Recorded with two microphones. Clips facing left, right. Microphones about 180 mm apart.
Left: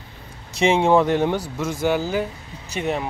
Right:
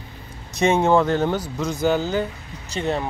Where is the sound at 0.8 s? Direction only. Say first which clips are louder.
Left 1 dB; 15° left (ahead or behind).